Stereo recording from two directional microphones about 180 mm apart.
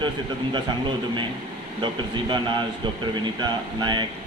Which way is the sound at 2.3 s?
25° right (ahead or behind).